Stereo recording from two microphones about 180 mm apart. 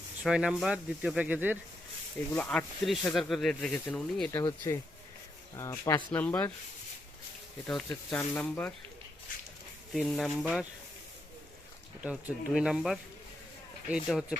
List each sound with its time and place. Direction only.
0.2 s speech: 5° right (ahead or behind)
2.3 s speech: 5° left (ahead or behind)
7.9 s speech: 10° left (ahead or behind)
9.9 s speech: centre (ahead or behind)
12.0 s speech: 5° right (ahead or behind)